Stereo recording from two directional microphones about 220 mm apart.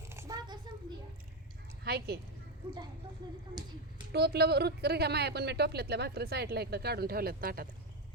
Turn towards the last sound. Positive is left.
turn(degrees=-40)  # may be behind; listen again after turning